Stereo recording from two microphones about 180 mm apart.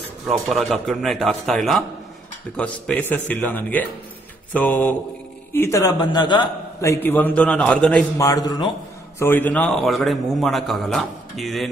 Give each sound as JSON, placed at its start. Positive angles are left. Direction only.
{"t": 0.3, "sound": "a man's voice", "side_deg": 0}
{"t": 8.2, "sound": "a man's voice", "side_deg": 20}
{"t": 9.2, "sound": "a man's voice", "side_deg": 10}